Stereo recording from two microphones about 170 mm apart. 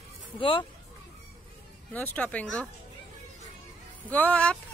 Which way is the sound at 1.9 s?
10° left (ahead or behind).